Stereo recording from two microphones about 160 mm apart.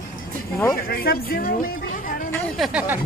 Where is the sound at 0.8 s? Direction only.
70° left (ahead or behind).